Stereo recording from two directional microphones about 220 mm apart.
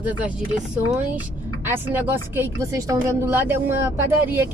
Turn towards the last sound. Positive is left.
turn(degrees=-10)  # may be behind; listen again after turning